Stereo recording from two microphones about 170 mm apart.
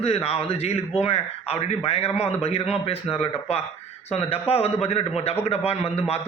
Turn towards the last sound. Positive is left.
turn(degrees=40)  # may be behind; listen again after turning